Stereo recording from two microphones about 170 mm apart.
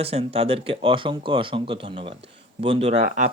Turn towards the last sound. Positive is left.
turn(degrees=-50)  # may be behind; listen again after turning